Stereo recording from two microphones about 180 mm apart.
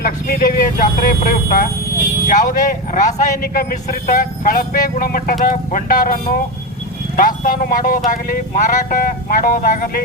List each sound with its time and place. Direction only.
0.0 s speech: 55° left (ahead or behind)